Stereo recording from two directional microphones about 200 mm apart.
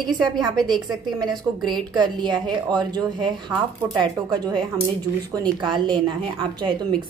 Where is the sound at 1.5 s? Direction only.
Centre (ahead or behind).